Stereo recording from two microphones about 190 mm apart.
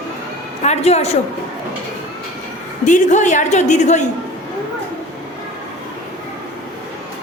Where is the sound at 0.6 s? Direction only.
35° left (ahead or behind).